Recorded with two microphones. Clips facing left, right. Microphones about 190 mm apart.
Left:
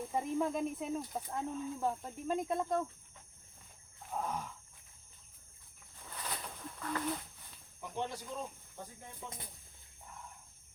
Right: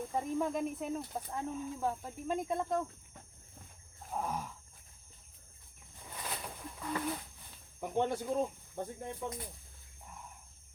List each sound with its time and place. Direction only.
0.1 s speech: 5° left (ahead or behind)
4.1 s a sound: 10° right (ahead or behind)
6.0 s owl: 10° right (ahead or behind)
7.8 s speech: 55° right (ahead or behind)